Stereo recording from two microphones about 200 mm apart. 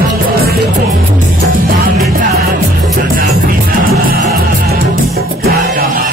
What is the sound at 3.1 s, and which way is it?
Music, 50° right (ahead or behind).